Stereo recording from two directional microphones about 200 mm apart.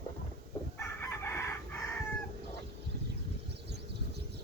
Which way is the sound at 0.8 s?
15° left (ahead or behind).